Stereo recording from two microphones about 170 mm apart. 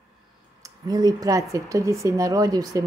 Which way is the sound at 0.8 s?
20° right (ahead or behind).